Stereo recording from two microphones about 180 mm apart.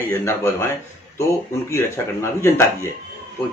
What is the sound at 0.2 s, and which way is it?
Speech, 15° left (ahead or behind).